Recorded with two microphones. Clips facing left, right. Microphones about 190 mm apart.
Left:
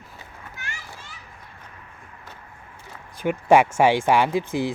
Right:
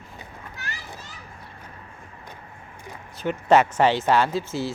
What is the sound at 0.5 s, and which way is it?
Children playing, 35° right (ahead or behind).